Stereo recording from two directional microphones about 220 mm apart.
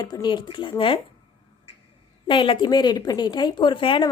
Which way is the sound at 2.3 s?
20° left (ahead or behind).